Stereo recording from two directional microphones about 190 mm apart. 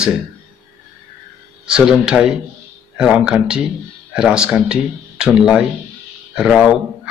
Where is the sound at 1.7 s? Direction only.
5° right (ahead or behind).